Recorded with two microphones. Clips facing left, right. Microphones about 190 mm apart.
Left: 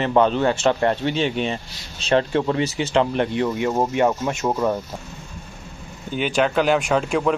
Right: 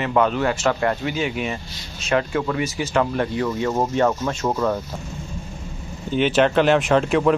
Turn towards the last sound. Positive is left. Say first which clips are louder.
# right 3 dB
turn(degrees=0)  # may be behind; listen again after turning